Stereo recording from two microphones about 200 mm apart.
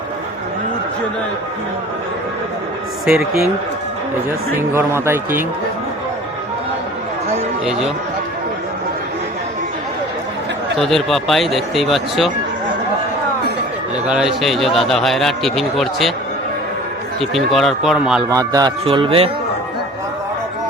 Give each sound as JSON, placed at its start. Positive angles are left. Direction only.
{"t": 4.7, "sound": "a man's voice", "side_deg": -10}
{"t": 7.6, "sound": "a man's voice", "side_deg": 0}
{"t": 10.8, "sound": "a man's voice", "side_deg": 0}
{"t": 14.0, "sound": "a man's voice", "side_deg": -5}
{"t": 17.2, "sound": "a man's voice", "side_deg": 0}
{"t": 18.3, "sound": "speech", "side_deg": -20}